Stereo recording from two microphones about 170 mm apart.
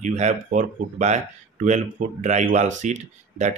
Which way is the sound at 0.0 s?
45° right (ahead or behind).